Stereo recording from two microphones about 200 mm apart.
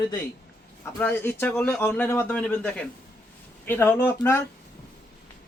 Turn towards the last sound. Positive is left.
turn(degrees=15)  # may be behind; listen again after turning